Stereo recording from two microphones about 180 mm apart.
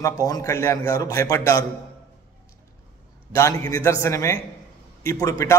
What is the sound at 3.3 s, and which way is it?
A man's voice, 20° left (ahead or behind).